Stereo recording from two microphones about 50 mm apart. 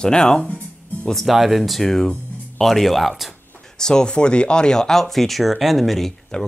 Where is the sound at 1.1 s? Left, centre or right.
Centre.